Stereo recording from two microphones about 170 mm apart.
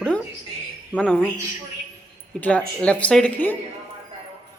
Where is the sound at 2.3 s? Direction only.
5° left (ahead or behind).